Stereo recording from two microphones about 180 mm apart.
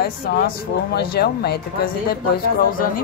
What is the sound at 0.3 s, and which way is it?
Speech, 60° left (ahead or behind).